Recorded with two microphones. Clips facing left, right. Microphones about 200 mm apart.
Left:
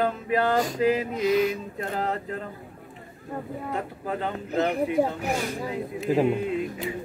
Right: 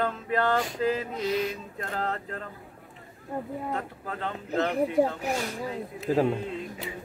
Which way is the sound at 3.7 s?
10° left (ahead or behind).